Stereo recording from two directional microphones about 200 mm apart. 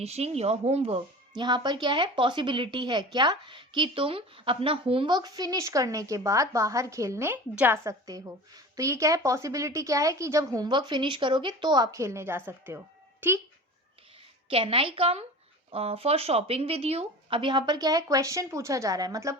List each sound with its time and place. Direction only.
0.0 s a woman's voice: 30° right (ahead or behind); by 13.4 s 10° right (ahead or behind)
14.5 s speech: 25° right (ahead or behind)